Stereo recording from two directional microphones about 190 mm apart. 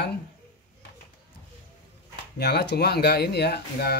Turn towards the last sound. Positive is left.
turn(degrees=55)  # may be behind; listen again after turning